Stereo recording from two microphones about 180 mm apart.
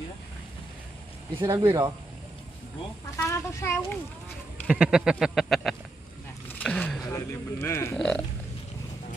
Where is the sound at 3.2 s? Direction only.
10° left (ahead or behind).